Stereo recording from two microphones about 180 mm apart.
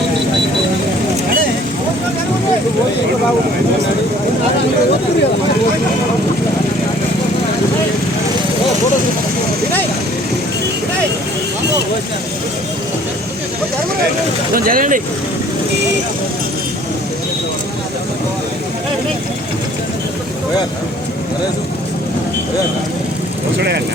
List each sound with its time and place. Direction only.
14.5 s vehicle: 50° right (ahead or behind)
23.6 s vehicle: 70° right (ahead or behind)